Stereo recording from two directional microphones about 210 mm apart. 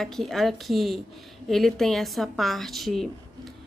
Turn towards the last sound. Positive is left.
turn(degrees=0)  # may be behind; listen again after turning